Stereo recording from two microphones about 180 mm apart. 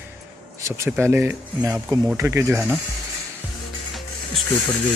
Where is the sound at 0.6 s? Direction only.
15° right (ahead or behind).